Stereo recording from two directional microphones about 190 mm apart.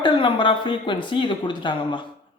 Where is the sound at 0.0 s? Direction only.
25° left (ahead or behind).